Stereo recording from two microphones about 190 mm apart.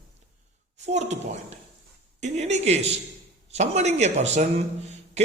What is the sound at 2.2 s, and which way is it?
A man's voice, 35° right (ahead or behind).